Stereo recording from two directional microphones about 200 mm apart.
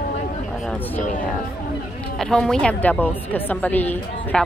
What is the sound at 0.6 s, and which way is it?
Speech, 10° left (ahead or behind).